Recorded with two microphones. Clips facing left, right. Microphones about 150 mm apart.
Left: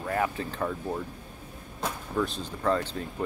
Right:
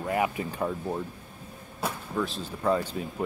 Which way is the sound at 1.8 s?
Centre (ahead or behind).